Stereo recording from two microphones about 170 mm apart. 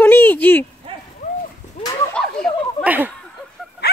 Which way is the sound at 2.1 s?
5° left (ahead or behind).